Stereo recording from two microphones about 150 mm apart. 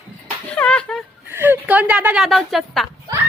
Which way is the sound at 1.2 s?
15° right (ahead or behind).